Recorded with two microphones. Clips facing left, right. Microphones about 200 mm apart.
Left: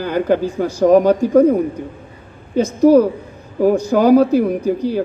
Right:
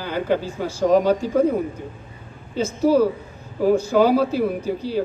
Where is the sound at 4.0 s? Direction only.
45° left (ahead or behind).